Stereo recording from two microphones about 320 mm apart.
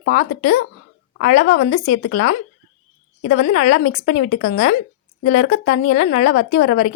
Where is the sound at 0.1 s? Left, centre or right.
Left.